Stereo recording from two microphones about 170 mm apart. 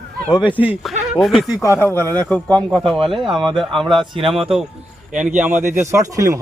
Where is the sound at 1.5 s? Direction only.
20° left (ahead or behind).